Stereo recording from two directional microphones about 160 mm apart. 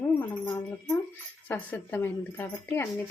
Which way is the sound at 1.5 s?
10° left (ahead or behind).